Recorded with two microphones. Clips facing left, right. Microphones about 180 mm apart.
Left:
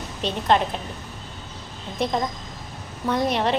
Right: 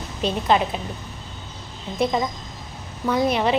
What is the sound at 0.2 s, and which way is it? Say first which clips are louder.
Speech: right 1 dB; 5° right (ahead or behind).